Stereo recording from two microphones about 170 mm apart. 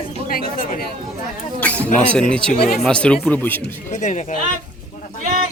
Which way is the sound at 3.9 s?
45° left (ahead or behind).